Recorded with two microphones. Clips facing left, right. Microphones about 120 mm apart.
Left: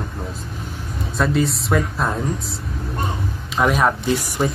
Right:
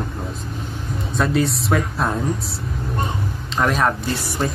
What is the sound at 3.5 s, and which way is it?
Speech, 5° left (ahead or behind).